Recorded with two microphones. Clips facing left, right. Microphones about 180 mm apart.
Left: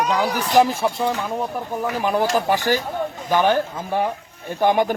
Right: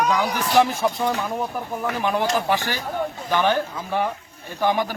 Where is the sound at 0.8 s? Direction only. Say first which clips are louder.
Left 1 dB; 10° left (ahead or behind).